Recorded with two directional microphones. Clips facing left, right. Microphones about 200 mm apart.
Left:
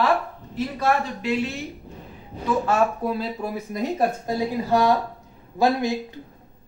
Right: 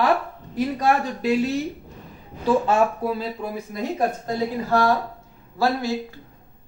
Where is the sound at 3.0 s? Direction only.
Centre (ahead or behind).